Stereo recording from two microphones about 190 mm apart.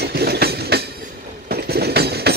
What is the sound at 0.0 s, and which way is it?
Train, 55° right (ahead or behind).